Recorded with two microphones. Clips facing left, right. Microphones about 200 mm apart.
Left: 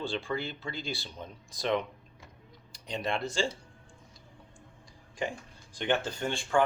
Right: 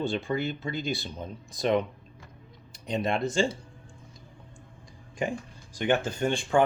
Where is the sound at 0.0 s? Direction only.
20° right (ahead or behind).